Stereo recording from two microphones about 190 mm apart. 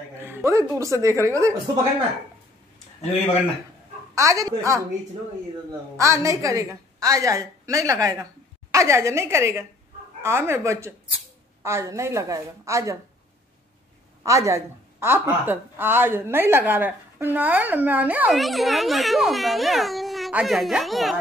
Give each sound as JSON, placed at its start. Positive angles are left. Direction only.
{"t": 0.2, "sound": "a woman's voice", "side_deg": -10}
{"t": 4.1, "sound": "a woman's voice", "side_deg": -15}
{"t": 5.9, "sound": "a woman's voice", "side_deg": -15}
{"t": 14.2, "sound": "a woman's voice", "side_deg": -15}